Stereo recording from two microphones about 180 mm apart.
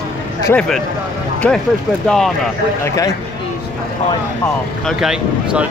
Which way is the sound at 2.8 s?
15° left (ahead or behind).